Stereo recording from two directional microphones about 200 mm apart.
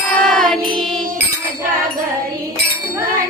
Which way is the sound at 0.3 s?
Centre (ahead or behind).